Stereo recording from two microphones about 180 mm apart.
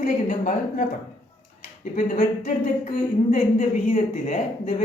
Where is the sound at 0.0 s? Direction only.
45° left (ahead or behind).